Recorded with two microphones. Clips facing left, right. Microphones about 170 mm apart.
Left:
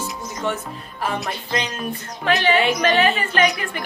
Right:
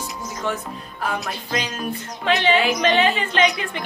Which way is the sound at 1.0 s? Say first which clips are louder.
Left 1 dB; 5° right (ahead or behind).